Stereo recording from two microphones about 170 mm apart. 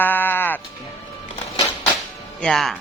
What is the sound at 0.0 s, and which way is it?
Music, 10° left (ahead or behind).